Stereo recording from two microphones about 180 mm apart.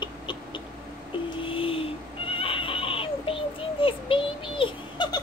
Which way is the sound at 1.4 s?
30° left (ahead or behind).